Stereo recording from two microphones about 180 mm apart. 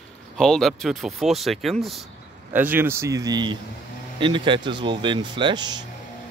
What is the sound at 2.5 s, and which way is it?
Speech, 10° right (ahead or behind).